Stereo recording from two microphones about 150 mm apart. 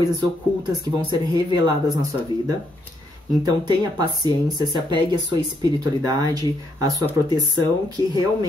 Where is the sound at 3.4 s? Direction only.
30° right (ahead or behind).